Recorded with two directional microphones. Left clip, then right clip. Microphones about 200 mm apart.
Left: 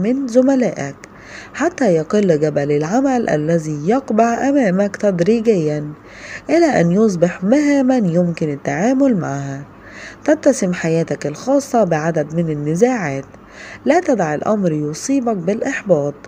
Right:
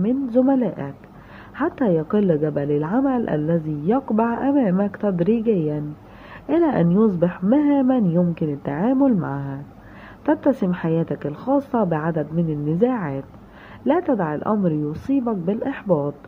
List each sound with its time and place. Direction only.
0.0 s a woman's voice: 15° left (ahead or behind)